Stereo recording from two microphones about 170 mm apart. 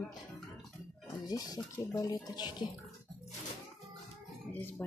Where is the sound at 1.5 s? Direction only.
10° left (ahead or behind).